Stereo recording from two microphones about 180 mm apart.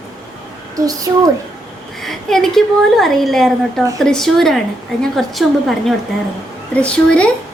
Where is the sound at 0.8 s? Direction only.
20° right (ahead or behind).